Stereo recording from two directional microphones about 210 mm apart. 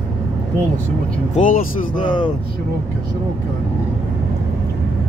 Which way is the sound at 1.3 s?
40° left (ahead or behind).